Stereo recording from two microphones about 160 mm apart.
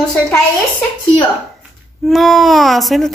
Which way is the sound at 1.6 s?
Centre (ahead or behind).